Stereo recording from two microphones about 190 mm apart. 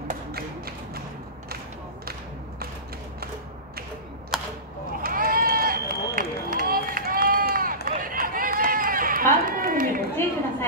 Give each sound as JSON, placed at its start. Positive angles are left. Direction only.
{"t": 0.1, "sound": "music", "side_deg": -55}
{"t": 4.3, "sound": "camera", "side_deg": 0}
{"t": 5.0, "sound": "run", "side_deg": -50}